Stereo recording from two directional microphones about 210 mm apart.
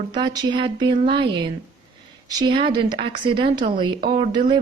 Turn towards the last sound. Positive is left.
turn(degrees=-20)  # may be behind; listen again after turning